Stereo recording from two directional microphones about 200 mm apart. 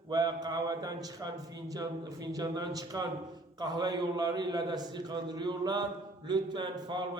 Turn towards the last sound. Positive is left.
turn(degrees=-20)  # may be behind; listen again after turning